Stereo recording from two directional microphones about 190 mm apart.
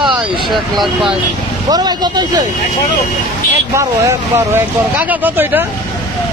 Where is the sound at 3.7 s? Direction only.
15° right (ahead or behind).